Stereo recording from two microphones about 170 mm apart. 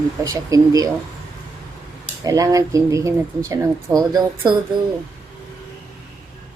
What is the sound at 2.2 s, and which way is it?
Speech, 20° right (ahead or behind).